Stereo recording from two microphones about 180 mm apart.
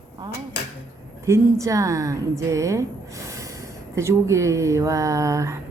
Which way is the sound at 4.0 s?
15° right (ahead or behind).